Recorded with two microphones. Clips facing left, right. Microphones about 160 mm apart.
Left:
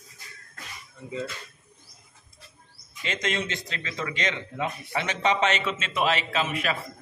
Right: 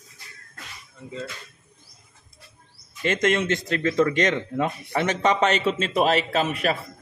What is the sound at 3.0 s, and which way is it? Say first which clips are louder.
Speech: right 8 dB; 55° right (ahead or behind).